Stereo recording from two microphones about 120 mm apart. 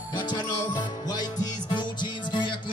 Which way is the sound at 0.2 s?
35° left (ahead or behind).